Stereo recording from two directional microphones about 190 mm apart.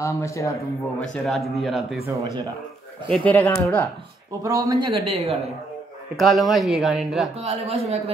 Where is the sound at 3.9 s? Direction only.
20° right (ahead or behind).